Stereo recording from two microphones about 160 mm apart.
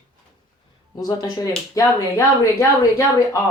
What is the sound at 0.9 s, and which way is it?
Speech, 25° left (ahead or behind).